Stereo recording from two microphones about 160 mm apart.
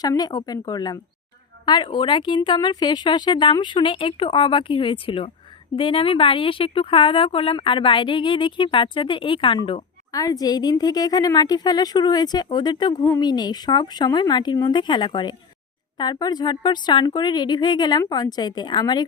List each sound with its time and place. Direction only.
0.0 s a woman's voice: 25° left (ahead or behind)